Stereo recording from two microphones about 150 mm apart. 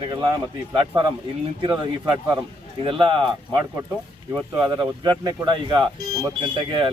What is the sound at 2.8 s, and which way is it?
Speech, 35° right (ahead or behind).